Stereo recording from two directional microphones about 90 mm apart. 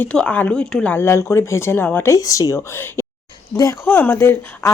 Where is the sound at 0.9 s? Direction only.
30° left (ahead or behind).